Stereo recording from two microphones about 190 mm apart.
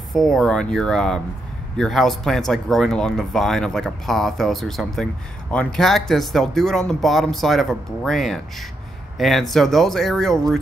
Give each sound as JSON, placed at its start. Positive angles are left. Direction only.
{"t": 0.1, "sound": "speech", "side_deg": 0}